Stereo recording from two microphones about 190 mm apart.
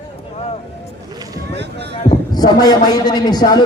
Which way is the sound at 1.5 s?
65° right (ahead or behind).